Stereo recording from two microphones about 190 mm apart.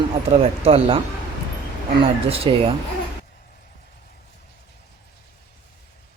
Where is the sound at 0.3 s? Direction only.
30° right (ahead or behind).